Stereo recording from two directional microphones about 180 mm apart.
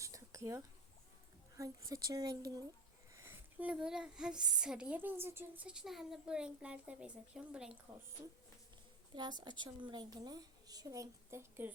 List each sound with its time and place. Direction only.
0.0 s a sound: 15° right (ahead or behind)
1.5 s a woman's voice: 15° right (ahead or behind)
9.4 s a woman's voice: 25° right (ahead or behind)